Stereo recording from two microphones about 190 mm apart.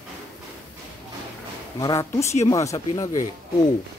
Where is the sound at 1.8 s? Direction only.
15° left (ahead or behind).